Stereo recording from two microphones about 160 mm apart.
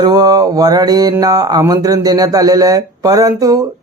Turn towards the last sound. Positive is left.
turn(degrees=-20)  # may be behind; listen again after turning